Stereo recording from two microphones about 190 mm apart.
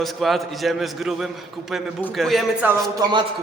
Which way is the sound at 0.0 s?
Centre (ahead or behind).